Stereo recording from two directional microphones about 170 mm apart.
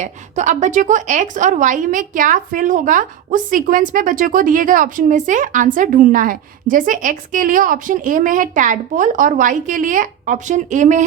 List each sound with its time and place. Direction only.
0.0 s a woman's voice: 45° right (ahead or behind)